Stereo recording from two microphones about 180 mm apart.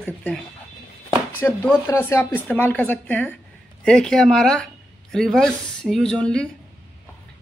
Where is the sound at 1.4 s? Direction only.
10° left (ahead or behind).